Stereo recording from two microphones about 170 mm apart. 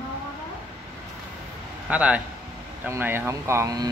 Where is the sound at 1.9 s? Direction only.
10° right (ahead or behind).